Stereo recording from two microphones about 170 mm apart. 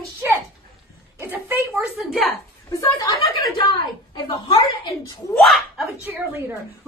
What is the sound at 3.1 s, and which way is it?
A woman's voice, 30° left (ahead or behind).